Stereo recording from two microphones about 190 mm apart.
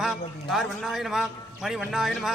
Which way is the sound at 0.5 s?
Centre (ahead or behind).